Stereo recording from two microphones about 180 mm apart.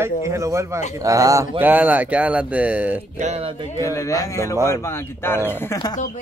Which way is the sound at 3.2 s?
35° right (ahead or behind).